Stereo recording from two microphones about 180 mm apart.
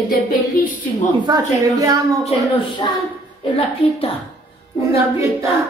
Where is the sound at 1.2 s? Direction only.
20° right (ahead or behind).